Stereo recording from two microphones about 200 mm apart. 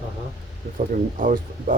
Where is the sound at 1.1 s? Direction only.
45° right (ahead or behind).